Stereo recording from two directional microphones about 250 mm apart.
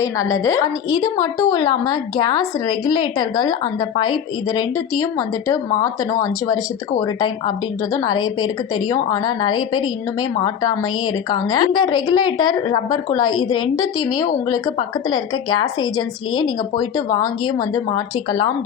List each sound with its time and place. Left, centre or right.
0.0 s a woman's voice: centre
13.3 s a woman's voice: left
13.6 s a woman's voice: centre